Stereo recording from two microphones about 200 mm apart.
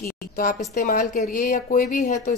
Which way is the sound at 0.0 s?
40° left (ahead or behind).